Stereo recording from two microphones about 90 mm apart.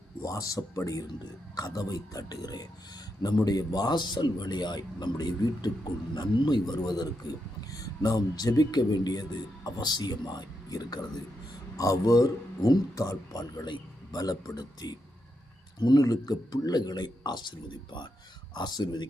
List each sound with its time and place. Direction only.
0.2 s a man's voice: 40° left (ahead or behind)
18.5 s a man's voice: 50° left (ahead or behind)